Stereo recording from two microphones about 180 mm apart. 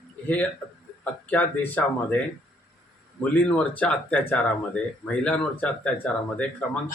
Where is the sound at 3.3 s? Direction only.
10° left (ahead or behind).